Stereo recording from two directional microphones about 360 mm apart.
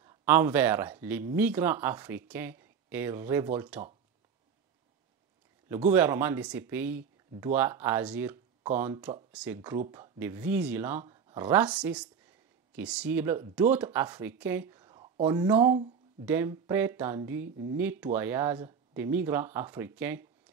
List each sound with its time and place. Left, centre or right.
0.0 s speech: centre
5.7 s speech: centre